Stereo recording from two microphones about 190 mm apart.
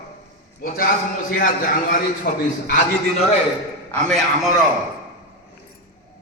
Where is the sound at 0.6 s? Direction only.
50° left (ahead or behind).